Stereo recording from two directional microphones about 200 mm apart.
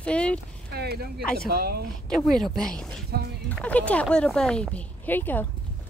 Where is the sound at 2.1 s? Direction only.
5° left (ahead or behind).